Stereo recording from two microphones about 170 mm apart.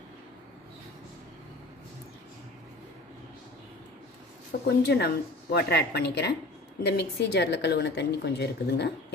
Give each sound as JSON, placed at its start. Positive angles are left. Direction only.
{"t": 4.6, "sound": "a woman's voice", "side_deg": 75}